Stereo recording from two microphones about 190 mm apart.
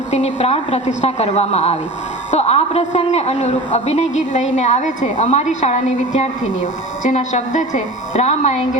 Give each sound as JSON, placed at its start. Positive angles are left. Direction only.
{"t": 0.1, "sound": "a man's voice", "side_deg": 35}